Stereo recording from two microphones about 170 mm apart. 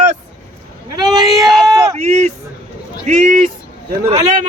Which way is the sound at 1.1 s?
20° right (ahead or behind).